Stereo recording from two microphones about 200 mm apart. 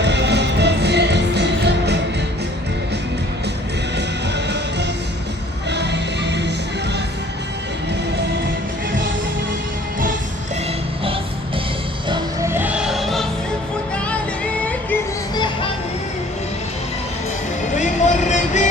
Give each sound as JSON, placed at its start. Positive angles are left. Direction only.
{"t": 0.0, "sound": "music", "side_deg": -60}
{"t": 3.9, "sound": "music", "side_deg": -60}
{"t": 12.0, "sound": "music", "side_deg": -20}
{"t": 14.6, "sound": "music", "side_deg": 10}
{"t": 17.7, "sound": "music", "side_deg": 40}